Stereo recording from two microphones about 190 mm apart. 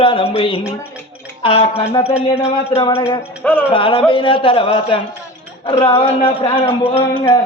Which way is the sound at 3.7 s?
25° left (ahead or behind).